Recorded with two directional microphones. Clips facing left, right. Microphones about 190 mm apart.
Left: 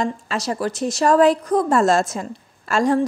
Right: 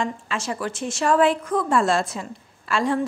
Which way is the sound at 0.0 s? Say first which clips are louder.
Left 4 dB; 40° left (ahead or behind).